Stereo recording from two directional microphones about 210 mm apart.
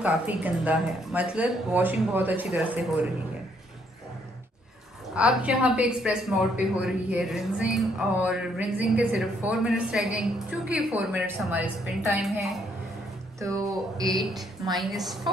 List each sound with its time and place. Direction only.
0.0 s speech: 5° right (ahead or behind)
5.1 s a woman's voice: 5° right (ahead or behind)
13.4 s speech: 15° right (ahead or behind)
14.7 s a woman's voice: centre (ahead or behind)